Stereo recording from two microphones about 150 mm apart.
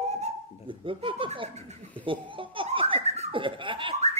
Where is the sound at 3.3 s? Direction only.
35° right (ahead or behind).